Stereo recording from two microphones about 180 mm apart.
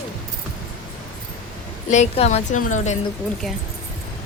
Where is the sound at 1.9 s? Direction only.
40° left (ahead or behind).